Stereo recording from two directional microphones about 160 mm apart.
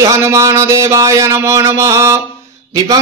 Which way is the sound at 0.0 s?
20° right (ahead or behind).